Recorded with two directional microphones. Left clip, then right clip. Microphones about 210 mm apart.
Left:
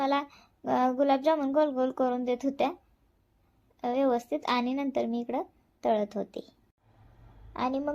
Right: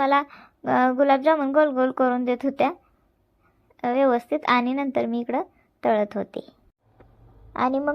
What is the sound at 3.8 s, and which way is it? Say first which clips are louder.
Speech: right 7 dB; 20° right (ahead or behind).